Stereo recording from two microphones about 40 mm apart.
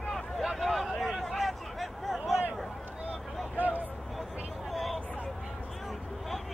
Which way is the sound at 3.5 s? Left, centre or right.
Right.